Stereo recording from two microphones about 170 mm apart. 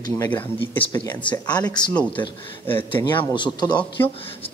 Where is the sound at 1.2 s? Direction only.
25° left (ahead or behind).